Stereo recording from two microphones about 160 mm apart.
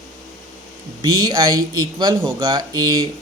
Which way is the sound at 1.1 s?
25° right (ahead or behind).